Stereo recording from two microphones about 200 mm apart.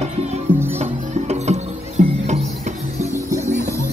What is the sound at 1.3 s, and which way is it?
Music, 35° right (ahead or behind).